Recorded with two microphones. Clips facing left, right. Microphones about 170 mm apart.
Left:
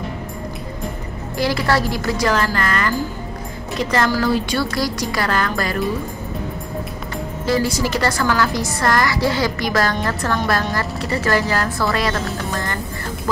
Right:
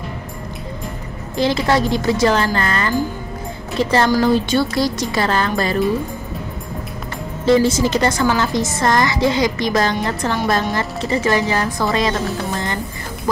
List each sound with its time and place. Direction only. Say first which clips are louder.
1.3 s a woman's voice: right 2 dB; 20° right (ahead or behind)
4.1 s a woman's voice: right 4 dB; 25° right (ahead or behind)
7.4 s a woman's voice: right 6 dB; 20° right (ahead or behind)